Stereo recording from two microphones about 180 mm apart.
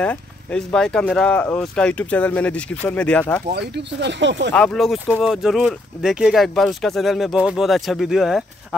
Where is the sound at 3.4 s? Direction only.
65° right (ahead or behind); by 4.5 s 80° right.